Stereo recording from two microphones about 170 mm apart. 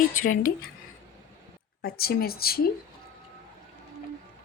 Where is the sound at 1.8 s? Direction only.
65° left (ahead or behind).